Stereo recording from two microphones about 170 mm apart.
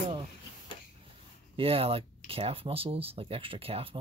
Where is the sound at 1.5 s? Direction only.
35° right (ahead or behind).